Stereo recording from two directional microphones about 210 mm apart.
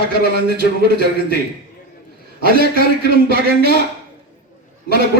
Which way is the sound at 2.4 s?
45° right (ahead or behind).